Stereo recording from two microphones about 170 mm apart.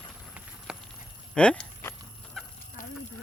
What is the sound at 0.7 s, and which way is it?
Clip-clop, 5° right (ahead or behind).